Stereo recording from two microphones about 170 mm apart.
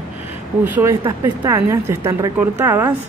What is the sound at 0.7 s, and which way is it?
Speech, 10° right (ahead or behind).